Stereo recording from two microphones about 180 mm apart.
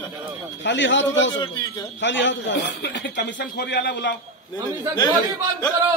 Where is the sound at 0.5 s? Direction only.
85° left.